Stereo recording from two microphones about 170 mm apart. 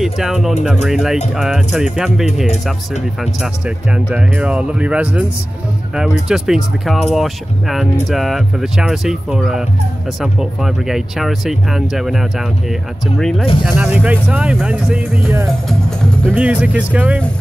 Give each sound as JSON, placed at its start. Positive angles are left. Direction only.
{"t": 0.0, "sound": "speech", "side_deg": 0}
{"t": 3.6, "sound": "speech", "side_deg": -5}
{"t": 6.2, "sound": "speech", "side_deg": 0}
{"t": 13.5, "sound": "speech", "side_deg": 30}
{"t": 13.7, "sound": "speech", "side_deg": -5}